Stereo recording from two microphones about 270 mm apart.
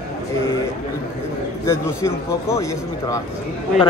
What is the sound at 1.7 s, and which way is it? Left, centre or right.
Speech, centre.